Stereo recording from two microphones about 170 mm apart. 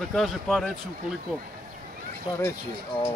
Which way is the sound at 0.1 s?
Centre (ahead or behind).